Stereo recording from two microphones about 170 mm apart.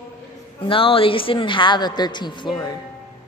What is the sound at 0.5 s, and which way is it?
A woman's voice, 30° left (ahead or behind).